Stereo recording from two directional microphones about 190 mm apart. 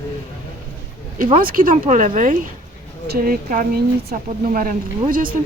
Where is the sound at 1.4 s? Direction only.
50° right (ahead or behind).